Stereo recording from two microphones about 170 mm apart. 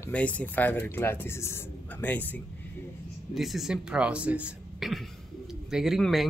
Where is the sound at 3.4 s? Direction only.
Centre (ahead or behind).